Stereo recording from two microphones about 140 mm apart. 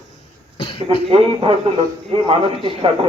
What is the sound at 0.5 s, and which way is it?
Cough, 40° left (ahead or behind).